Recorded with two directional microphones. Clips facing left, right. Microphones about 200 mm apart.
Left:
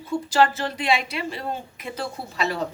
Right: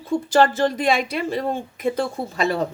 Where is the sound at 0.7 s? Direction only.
45° right (ahead or behind).